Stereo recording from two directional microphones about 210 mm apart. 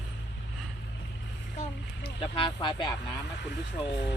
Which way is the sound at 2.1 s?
25° left (ahead or behind).